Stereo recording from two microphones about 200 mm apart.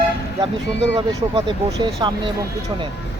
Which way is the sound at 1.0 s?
20° right (ahead or behind).